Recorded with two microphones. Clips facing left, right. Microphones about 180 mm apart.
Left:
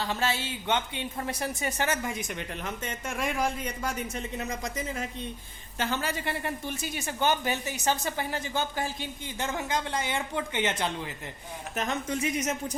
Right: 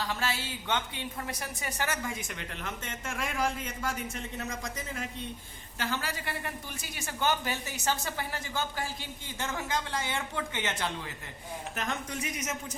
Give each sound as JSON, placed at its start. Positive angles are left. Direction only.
{"t": 0.0, "sound": "a woman's voice", "side_deg": 25}